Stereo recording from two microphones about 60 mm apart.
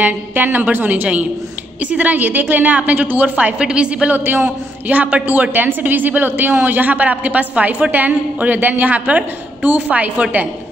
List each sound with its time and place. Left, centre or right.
0.0 s a woman's voice: right
3.5 s a woman's voice: centre
4.2 s a man's voice: right
4.5 s a woman's voice: right